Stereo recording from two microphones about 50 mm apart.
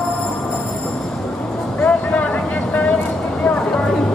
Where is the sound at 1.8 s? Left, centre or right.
Left.